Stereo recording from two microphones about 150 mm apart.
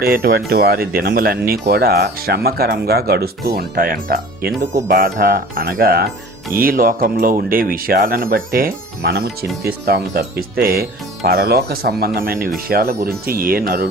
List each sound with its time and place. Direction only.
0.0 s speech: 80° right
12.6 s speech: 85° right